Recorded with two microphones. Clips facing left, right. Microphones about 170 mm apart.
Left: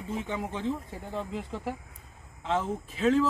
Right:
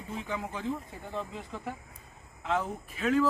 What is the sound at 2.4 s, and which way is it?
Speech, 25° left (ahead or behind).